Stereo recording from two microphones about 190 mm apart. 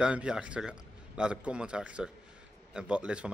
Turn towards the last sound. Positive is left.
turn(degrees=-5)  # may be behind; listen again after turning